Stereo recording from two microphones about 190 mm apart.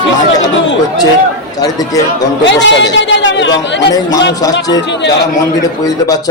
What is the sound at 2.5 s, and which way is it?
Speech, 70° left (ahead or behind).